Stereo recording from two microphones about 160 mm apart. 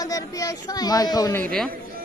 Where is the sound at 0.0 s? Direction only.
20° left (ahead or behind).